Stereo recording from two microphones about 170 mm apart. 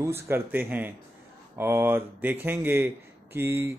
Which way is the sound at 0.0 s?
15° right (ahead or behind).